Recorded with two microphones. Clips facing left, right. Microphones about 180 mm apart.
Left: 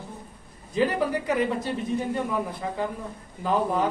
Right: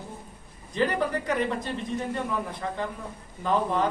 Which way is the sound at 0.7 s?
5° left (ahead or behind).